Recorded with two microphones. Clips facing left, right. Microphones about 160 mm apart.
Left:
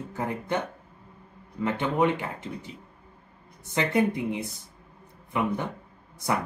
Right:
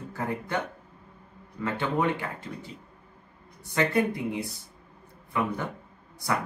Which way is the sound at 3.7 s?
20° left (ahead or behind).